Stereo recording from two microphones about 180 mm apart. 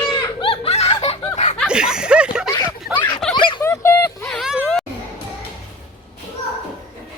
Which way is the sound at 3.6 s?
15° left (ahead or behind).